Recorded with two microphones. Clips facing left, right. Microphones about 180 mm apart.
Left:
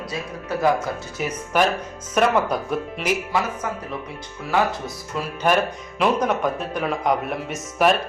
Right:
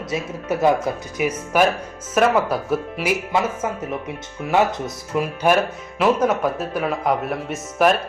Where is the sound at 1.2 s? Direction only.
10° right (ahead or behind).